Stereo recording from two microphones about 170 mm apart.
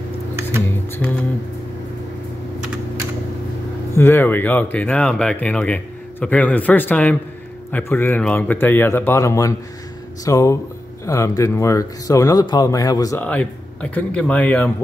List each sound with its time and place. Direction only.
0.7 s music: 10° left (ahead or behind)
3.9 s speech: 15° left (ahead or behind)
13.2 s speech: 10° left (ahead or behind)